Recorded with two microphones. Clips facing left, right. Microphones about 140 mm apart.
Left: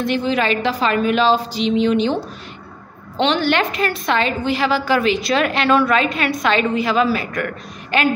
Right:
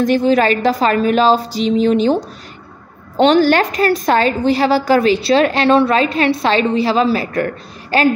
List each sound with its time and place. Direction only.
0.0 s a woman's voice: 40° right (ahead or behind)
3.2 s a woman's voice: 40° right (ahead or behind)